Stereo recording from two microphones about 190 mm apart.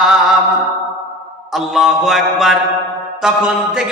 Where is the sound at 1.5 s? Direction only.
Centre (ahead or behind).